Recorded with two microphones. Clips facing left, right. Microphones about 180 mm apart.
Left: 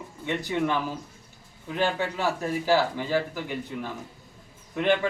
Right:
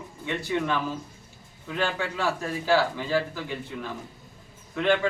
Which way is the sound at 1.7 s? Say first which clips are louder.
Left 2 dB; 15° left (ahead or behind).